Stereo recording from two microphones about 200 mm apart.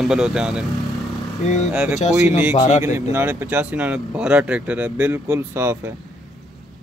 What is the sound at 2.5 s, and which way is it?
Speech, 35° left (ahead or behind).